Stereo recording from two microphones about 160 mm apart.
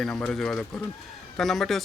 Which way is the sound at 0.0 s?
5° left (ahead or behind).